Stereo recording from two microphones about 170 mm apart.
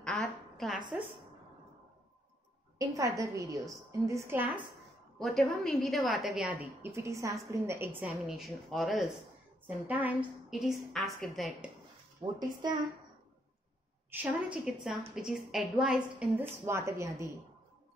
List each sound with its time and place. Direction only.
0.0 s a sound: centre (ahead or behind)
2.8 s a woman's voice: 20° right (ahead or behind)
5.2 s a woman's voice: centre (ahead or behind)
8.3 s a woman's voice: centre (ahead or behind)
12.2 s a woman's voice: 15° right (ahead or behind)
14.1 s a woman's voice: 5° right (ahead or behind)